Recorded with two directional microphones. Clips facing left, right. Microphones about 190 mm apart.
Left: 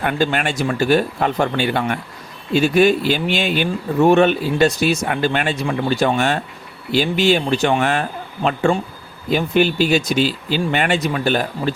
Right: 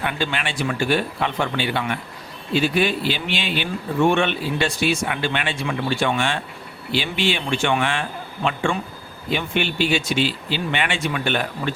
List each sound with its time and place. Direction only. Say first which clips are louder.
0.0 s speech: left 6 dB; 45° left (ahead or behind)